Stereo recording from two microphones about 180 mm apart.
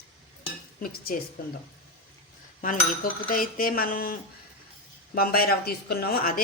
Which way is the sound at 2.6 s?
50° left (ahead or behind).